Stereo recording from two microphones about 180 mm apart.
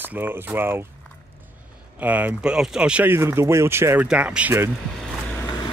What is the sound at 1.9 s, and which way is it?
Speech, 10° right (ahead or behind).